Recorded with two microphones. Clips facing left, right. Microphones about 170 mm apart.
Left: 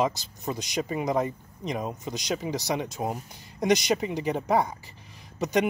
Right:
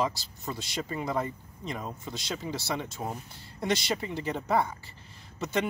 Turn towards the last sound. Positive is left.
turn(degrees=15)  # may be behind; listen again after turning